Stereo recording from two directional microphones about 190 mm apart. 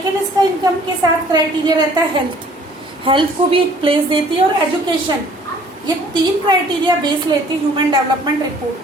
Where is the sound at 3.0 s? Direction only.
25° right (ahead or behind).